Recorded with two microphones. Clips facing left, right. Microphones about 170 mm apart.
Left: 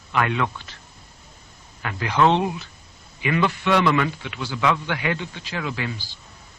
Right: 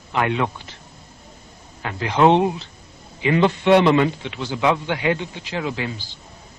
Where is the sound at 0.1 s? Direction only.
25° right (ahead or behind).